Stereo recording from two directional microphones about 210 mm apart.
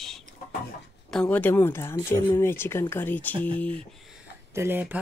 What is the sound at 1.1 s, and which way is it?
Speech, 5° left (ahead or behind).